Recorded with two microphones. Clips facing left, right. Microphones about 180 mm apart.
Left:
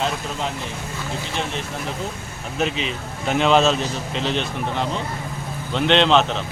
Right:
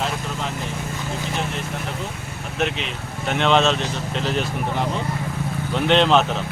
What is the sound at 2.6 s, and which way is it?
Speech, centre (ahead or behind).